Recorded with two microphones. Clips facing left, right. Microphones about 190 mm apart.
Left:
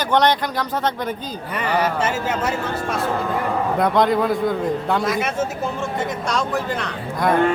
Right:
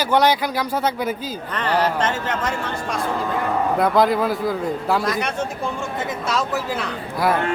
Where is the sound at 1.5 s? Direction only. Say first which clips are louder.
Even; 10° left (ahead or behind).